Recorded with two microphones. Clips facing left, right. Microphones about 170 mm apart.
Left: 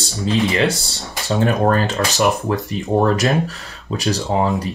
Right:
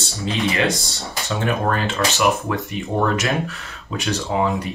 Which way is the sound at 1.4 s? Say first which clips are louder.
Left 5 dB; 40° left (ahead or behind).